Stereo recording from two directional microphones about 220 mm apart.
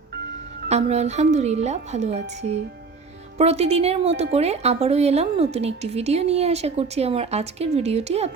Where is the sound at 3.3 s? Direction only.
30° right (ahead or behind).